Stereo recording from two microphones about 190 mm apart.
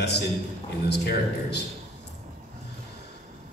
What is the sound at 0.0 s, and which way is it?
A man's voice, 60° left (ahead or behind).